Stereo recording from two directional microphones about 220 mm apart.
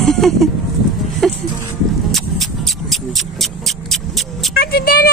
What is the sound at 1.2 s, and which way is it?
Music, centre (ahead or behind).